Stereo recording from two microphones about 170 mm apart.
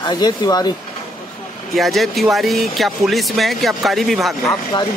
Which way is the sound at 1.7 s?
Centre (ahead or behind).